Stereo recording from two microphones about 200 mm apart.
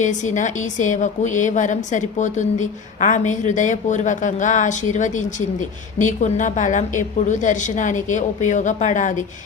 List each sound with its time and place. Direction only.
0.0 s a woman's voice: 35° left (ahead or behind)